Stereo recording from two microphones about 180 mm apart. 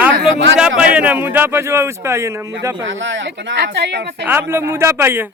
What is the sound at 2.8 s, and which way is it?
Speech, 90° right.